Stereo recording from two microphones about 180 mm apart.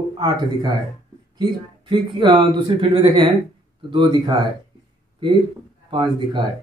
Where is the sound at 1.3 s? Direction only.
25° right (ahead or behind).